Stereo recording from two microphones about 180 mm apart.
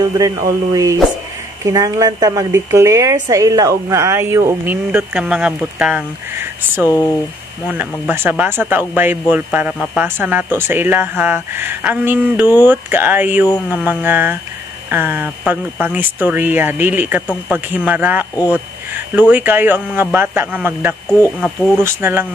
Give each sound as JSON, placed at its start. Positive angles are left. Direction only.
{"t": 0.0, "sound": "speech", "side_deg": -20}
{"t": 4.9, "sound": "speech", "side_deg": -5}
{"t": 6.9, "sound": "speech", "side_deg": 15}
{"t": 7.6, "sound": "speech", "side_deg": -10}